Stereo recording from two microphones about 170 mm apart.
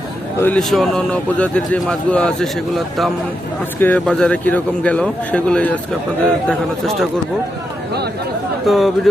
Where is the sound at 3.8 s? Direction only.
10° left (ahead or behind).